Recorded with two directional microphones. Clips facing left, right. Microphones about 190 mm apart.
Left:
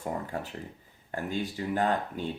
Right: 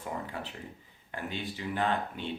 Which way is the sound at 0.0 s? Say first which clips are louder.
Left 4 dB; 45° left (ahead or behind).